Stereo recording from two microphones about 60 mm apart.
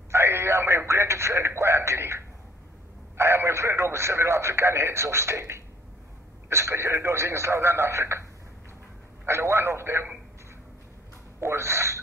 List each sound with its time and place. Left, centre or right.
0.1 s radio: right
3.2 s speech: right
11.3 s speech: right